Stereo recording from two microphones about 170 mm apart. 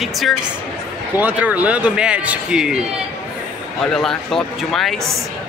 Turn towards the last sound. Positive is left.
turn(degrees=0)  # may be behind; listen again after turning